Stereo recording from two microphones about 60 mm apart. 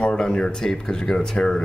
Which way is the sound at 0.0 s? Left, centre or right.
Centre.